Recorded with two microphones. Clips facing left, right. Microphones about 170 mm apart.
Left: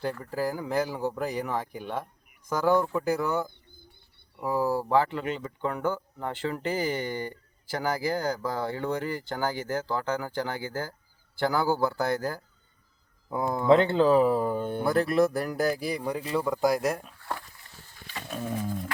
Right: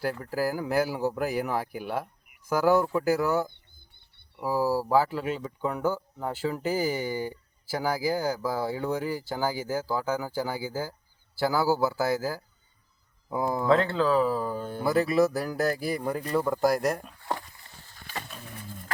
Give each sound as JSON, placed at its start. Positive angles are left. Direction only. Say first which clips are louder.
{"t": 0.0, "sound": "speech", "louder": "right 1 dB", "side_deg": -5}
{"t": 14.4, "sound": "speech", "louder": "left 4 dB", "side_deg": 25}
{"t": 14.8, "sound": "speech", "louder": "right 1 dB", "side_deg": 0}
{"t": 18.3, "sound": "roaring cats", "louder": "left 12 dB", "side_deg": 75}